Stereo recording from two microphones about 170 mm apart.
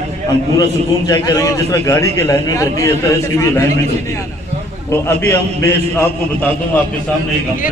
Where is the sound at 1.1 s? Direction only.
20° left (ahead or behind).